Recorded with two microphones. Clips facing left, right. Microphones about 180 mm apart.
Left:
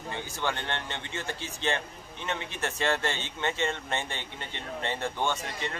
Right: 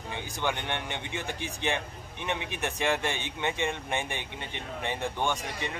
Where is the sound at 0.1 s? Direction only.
15° right (ahead or behind).